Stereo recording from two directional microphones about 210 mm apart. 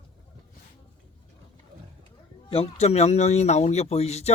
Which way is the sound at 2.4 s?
30° left (ahead or behind).